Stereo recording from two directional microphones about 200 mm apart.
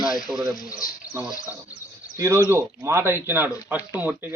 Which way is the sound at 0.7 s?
15° left (ahead or behind).